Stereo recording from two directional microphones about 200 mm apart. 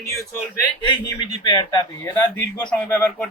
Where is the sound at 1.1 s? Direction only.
20° left (ahead or behind).